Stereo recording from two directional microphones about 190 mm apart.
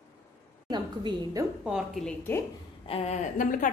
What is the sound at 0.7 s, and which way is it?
Speech, 20° right (ahead or behind).